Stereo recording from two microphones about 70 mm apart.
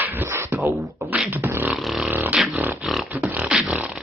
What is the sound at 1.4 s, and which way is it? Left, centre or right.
Beatboxing, right.